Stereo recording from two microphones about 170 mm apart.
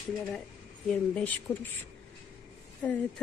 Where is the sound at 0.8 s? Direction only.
10° left (ahead or behind).